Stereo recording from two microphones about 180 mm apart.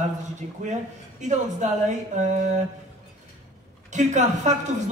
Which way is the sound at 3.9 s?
40° right (ahead or behind).